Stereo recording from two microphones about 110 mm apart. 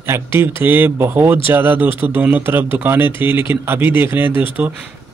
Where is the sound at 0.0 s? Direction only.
20° right (ahead or behind).